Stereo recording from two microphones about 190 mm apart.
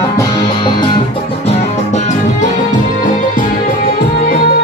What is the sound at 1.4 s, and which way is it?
Music, 35° left (ahead or behind).